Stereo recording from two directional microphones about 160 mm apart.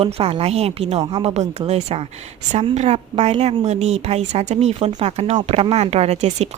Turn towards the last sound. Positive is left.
turn(degrees=-40)  # may be behind; listen again after turning